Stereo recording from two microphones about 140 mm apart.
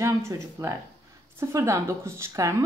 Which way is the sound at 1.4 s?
20° right (ahead or behind).